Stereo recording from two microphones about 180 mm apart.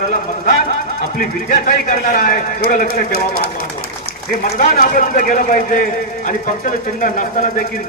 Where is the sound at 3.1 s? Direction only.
55° right (ahead or behind).